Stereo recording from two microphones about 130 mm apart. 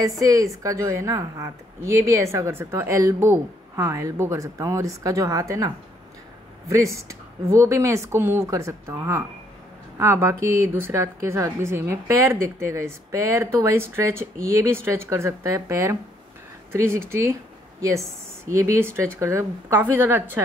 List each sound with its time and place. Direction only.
0.2 s speech: 25° right (ahead or behind)
6.7 s speech: 20° right (ahead or behind)